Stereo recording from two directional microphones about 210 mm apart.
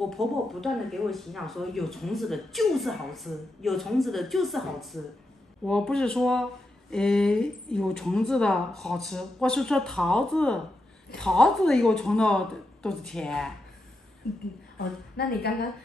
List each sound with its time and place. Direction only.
0.0 s speech: centre (ahead or behind)
15.1 s a woman's voice: 50° left (ahead or behind)